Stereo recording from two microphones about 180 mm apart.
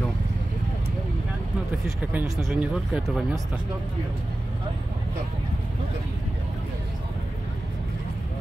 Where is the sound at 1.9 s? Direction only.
10° right (ahead or behind).